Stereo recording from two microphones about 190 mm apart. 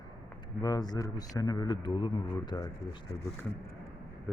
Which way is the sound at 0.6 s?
20° left (ahead or behind).